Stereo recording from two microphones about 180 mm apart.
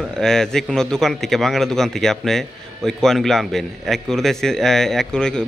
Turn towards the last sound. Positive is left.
turn(degrees=5)  # may be behind; listen again after turning